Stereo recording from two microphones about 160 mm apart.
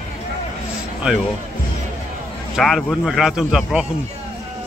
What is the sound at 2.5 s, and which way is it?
Speech, centre (ahead or behind).